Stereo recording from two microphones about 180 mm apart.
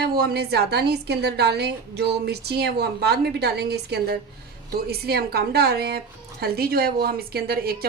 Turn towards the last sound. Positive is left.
turn(degrees=-55)  # may be behind; listen again after turning